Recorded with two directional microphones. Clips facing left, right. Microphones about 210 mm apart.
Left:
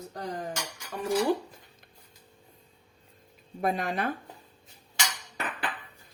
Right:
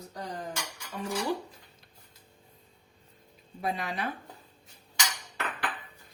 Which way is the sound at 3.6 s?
50° left (ahead or behind).